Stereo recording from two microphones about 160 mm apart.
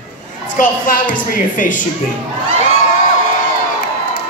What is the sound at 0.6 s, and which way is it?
A woman's voice, 60° left (ahead or behind).